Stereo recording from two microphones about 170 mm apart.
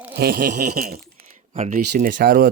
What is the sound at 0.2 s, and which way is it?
Speech, 60° right (ahead or behind).